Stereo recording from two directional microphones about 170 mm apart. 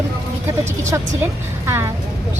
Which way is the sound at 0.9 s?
15° right (ahead or behind).